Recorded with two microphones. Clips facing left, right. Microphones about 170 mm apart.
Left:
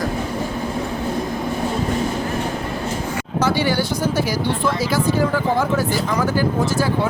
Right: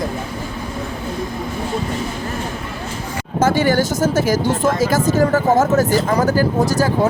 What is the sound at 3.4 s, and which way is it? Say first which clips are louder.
Speech: right 4 dB; 45° right (ahead or behind).